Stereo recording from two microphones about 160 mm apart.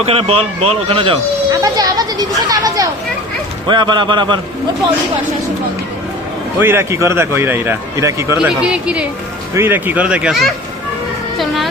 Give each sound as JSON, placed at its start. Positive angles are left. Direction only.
{"t": 0.0, "sound": "speech", "side_deg": -40}
{"t": 6.6, "sound": "a man's voice", "side_deg": -15}
{"t": 8.4, "sound": "a man's voice", "side_deg": -5}